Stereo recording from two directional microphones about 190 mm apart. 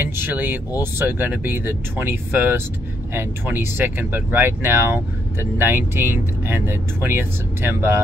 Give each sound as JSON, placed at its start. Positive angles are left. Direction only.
{"t": 0.0, "sound": "speech", "side_deg": -10}